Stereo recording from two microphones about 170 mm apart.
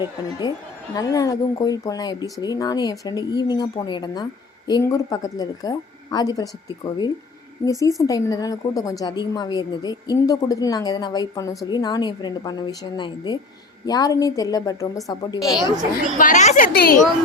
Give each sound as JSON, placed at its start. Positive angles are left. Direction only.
{"t": 0.0, "sound": "speech", "side_deg": 25}
{"t": 16.1, "sound": "a woman's voice", "side_deg": 50}